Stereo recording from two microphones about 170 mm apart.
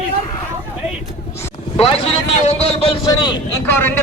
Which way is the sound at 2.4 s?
40° left (ahead or behind).